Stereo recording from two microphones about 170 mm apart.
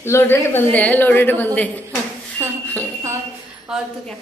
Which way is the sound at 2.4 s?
15° right (ahead or behind).